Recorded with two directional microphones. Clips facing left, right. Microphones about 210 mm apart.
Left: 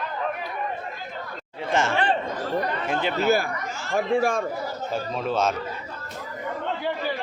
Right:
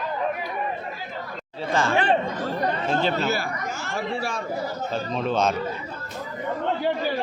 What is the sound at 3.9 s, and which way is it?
Speech, 55° left (ahead or behind).